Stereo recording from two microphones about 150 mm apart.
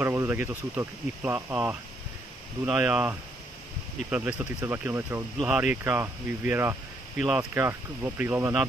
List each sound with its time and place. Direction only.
0.0 s speech: 15° right (ahead or behind)
5.4 s speech: 5° right (ahead or behind)